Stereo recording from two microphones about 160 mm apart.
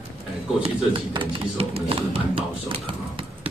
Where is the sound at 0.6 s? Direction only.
35° right (ahead or behind).